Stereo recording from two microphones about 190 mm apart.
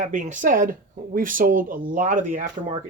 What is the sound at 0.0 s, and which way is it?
Speech, 40° right (ahead or behind).